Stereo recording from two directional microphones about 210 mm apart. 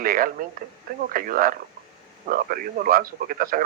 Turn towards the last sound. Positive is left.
turn(degrees=-40)  # may be behind; listen again after turning